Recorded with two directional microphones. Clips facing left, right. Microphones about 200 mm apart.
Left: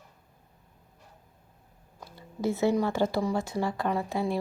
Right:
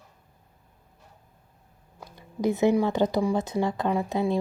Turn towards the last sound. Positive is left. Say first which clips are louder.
# right 3 dB
turn(degrees=-20)  # may be behind; listen again after turning